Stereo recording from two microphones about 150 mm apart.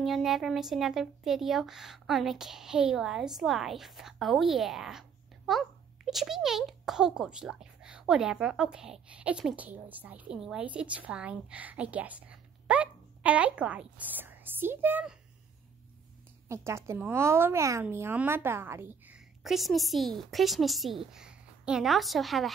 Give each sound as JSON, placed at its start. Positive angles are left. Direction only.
{"t": 0.0, "sound": "speech", "side_deg": 0}
{"t": 16.4, "sound": "speech", "side_deg": -20}